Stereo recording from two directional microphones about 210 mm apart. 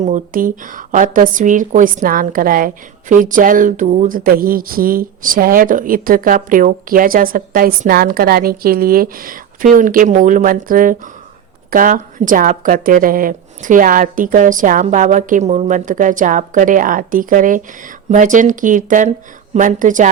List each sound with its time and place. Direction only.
0.0 s a woman's voice: 40° right (ahead or behind)